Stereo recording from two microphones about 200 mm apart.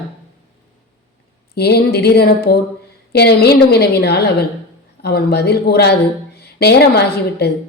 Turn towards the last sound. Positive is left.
turn(degrees=55)  # may be behind; listen again after turning